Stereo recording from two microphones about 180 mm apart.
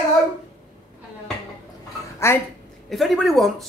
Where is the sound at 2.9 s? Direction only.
Centre (ahead or behind).